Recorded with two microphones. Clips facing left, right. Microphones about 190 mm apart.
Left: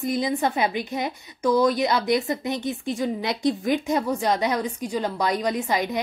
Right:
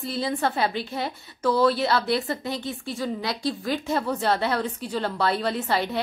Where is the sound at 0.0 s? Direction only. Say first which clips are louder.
Left 3 dB; 15° left (ahead or behind).